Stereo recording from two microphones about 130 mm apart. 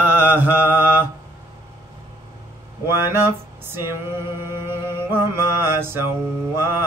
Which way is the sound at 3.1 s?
15° right (ahead or behind).